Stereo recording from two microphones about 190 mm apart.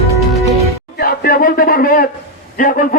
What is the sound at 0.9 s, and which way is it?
Speech, 50° left (ahead or behind).